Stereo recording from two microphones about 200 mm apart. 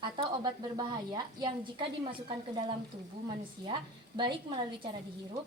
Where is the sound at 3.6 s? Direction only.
25° right (ahead or behind).